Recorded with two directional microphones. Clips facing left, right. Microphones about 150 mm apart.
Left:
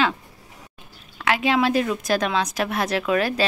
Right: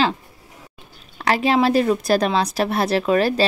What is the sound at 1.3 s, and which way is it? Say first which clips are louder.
A woman's voice: right 3 dB; 35° right (ahead or behind).